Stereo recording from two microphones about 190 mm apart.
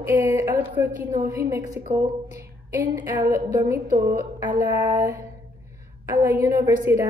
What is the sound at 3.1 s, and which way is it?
Speech, 15° right (ahead or behind).